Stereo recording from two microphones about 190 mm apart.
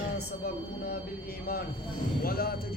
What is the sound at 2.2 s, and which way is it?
Speech, 50° left (ahead or behind).